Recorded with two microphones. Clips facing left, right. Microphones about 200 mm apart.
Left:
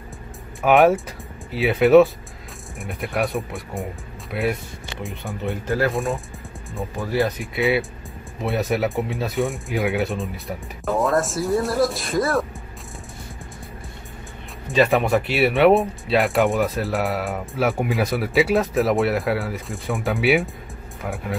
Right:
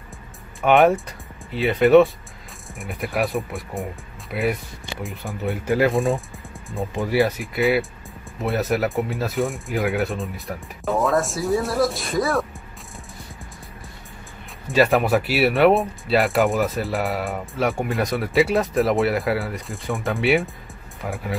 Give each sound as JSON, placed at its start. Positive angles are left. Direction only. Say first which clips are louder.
{"t": 0.6, "sound": "speech", "louder": "left 1 dB", "side_deg": 0}
{"t": 6.8, "sound": "speech", "louder": "right 2 dB", "side_deg": -15}
{"t": 14.7, "sound": "speech", "louder": "even", "side_deg": -5}